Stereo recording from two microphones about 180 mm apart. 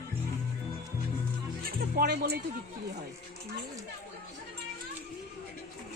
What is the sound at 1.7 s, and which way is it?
Music, 60° right (ahead or behind).